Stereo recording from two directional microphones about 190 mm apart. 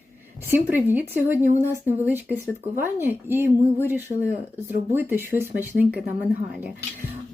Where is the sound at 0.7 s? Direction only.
10° right (ahead or behind).